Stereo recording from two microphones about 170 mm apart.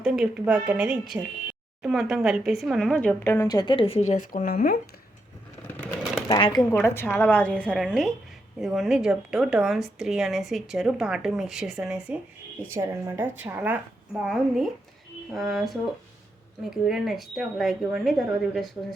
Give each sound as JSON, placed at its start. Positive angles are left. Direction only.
{"t": 0.0, "sound": "speech", "side_deg": -5}
{"t": 3.3, "sound": "speech", "side_deg": 20}
{"t": 6.2, "sound": "a woman's voice", "side_deg": 25}